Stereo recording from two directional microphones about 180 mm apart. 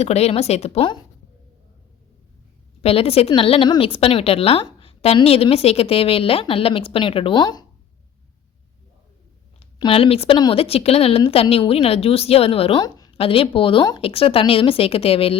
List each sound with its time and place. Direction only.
0.0 s a woman's voice: 35° left (ahead or behind)
2.8 s a woman's voice: 35° left (ahead or behind)
9.6 s a woman's voice: 30° left (ahead or behind)